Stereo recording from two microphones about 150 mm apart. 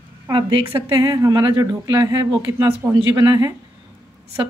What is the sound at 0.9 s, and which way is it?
Speech, 25° right (ahead or behind).